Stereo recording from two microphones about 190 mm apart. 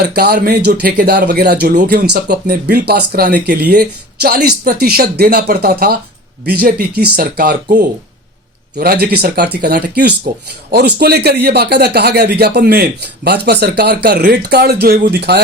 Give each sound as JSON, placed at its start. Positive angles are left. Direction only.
{"t": 0.1, "sound": "speech", "side_deg": -55}